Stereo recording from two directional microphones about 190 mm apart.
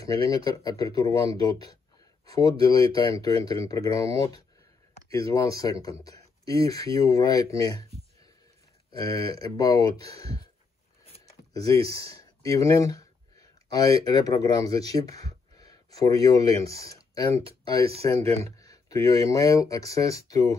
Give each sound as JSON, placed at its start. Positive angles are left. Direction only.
{"t": 0.0, "sound": "speech", "side_deg": 20}
{"t": 9.0, "sound": "speech", "side_deg": 20}
{"t": 11.9, "sound": "speech", "side_deg": 15}